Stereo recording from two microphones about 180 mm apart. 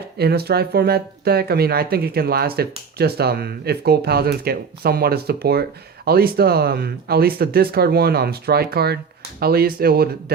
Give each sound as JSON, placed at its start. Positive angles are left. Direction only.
{"t": 0.2, "sound": "speech", "side_deg": -60}